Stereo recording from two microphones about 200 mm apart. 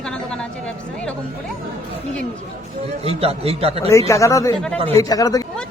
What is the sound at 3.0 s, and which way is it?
Speech, 30° right (ahead or behind).